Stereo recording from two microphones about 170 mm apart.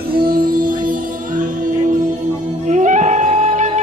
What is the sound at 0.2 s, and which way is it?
Music, 55° right (ahead or behind).